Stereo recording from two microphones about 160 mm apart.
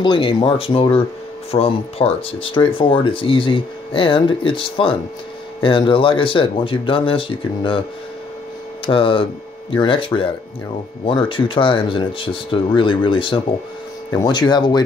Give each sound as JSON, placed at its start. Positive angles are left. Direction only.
{"t": 0.0, "sound": "speech", "side_deg": 30}
{"t": 8.8, "sound": "speech", "side_deg": 35}